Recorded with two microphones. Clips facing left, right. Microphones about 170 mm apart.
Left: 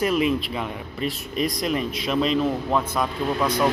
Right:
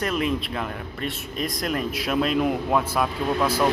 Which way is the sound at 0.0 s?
Centre (ahead or behind).